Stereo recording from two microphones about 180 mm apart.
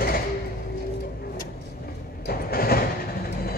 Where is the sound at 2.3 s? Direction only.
55° left (ahead or behind).